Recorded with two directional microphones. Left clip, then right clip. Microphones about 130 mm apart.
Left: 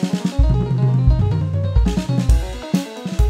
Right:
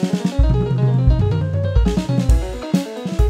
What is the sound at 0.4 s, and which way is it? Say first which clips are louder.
Music: right 2 dB; 45° right (ahead or behind).